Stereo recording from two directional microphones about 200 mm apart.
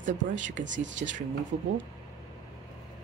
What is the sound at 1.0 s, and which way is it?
Speech, 40° right (ahead or behind).